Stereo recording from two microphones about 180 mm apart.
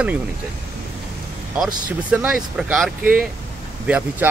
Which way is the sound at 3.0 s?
50° right (ahead or behind).